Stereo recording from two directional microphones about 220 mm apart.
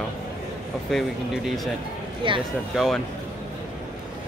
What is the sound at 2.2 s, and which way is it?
Speech, 20° right (ahead or behind).